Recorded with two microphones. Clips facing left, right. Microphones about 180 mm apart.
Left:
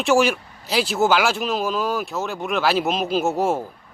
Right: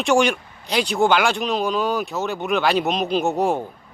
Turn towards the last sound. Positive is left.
turn(degrees=0)  # may be behind; listen again after turning